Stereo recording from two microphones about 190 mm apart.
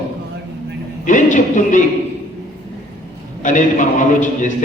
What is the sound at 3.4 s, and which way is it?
Speech, 40° left (ahead or behind).